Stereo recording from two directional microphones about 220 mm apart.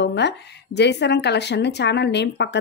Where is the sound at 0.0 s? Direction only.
50° left (ahead or behind).